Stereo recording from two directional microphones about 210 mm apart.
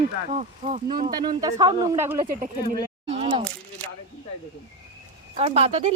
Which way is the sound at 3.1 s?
25° right (ahead or behind).